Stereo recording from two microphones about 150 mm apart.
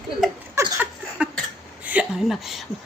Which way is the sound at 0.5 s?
10° right (ahead or behind).